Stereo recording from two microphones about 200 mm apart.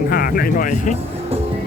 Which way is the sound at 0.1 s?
50° left (ahead or behind).